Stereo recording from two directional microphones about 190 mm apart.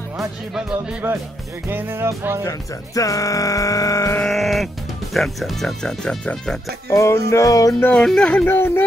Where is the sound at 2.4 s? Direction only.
20° left (ahead or behind).